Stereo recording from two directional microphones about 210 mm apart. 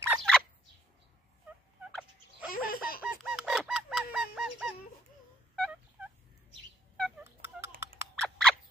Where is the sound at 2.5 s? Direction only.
45° left (ahead or behind).